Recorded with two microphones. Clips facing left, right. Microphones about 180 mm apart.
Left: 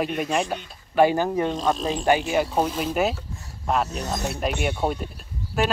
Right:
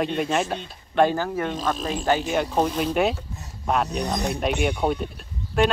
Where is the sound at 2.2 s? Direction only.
5° left (ahead or behind).